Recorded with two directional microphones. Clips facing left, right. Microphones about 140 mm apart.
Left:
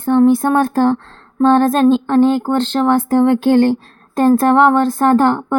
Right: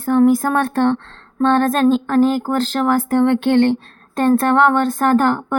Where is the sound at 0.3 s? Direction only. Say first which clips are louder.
Left 3 dB; 30° left (ahead or behind).